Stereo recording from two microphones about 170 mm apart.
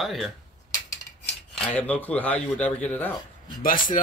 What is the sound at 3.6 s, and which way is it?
Speech, 55° left (ahead or behind).